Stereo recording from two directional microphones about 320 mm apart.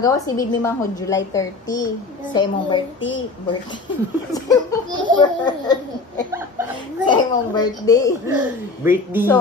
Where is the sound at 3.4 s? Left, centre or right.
Centre.